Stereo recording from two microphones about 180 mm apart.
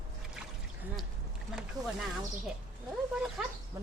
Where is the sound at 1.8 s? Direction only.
20° right (ahead or behind).